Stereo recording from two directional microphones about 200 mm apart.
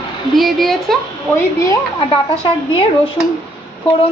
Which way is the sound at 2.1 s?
25° left (ahead or behind).